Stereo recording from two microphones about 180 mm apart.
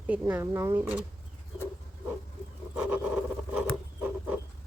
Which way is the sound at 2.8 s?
5° right (ahead or behind).